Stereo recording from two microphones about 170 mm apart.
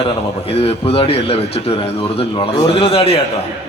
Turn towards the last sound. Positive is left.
turn(degrees=35)  # may be behind; listen again after turning